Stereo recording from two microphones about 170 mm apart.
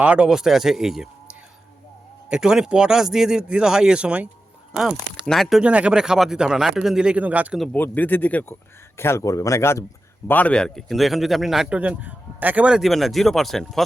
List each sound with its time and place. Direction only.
0.0 s a man's voice: 5° right (ahead or behind)
2.3 s a man's voice: 5° right (ahead or behind)
7.7 s a man's voice: 10° left (ahead or behind)